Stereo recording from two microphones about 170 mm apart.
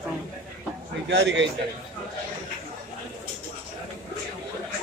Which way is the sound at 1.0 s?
90° right.